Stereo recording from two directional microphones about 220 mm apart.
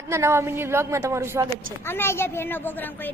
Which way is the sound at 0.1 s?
10° right (ahead or behind).